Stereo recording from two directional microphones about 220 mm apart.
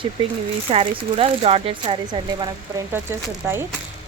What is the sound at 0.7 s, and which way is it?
Speech, 25° right (ahead or behind).